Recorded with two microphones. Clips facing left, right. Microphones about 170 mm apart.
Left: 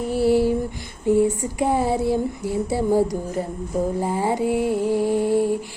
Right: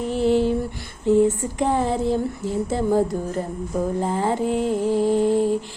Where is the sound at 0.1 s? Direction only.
10° left (ahead or behind).